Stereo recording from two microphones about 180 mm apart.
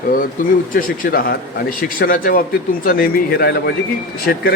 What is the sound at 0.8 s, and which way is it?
A man's voice, 55° left (ahead or behind).